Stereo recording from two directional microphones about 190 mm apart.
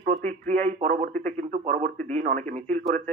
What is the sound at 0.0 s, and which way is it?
Speech, 40° right (ahead or behind).